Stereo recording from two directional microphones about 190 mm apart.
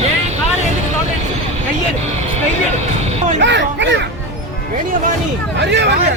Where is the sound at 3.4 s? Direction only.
70° right (ahead or behind).